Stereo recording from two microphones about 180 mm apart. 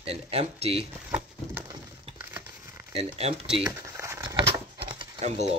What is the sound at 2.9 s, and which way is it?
Speech, 35° right (ahead or behind).